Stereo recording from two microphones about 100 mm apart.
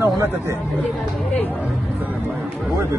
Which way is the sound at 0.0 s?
30° right (ahead or behind).